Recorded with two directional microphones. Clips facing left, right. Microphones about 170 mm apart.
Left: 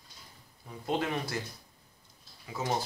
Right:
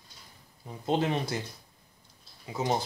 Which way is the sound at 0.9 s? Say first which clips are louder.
Right 4 dB; 25° right (ahead or behind).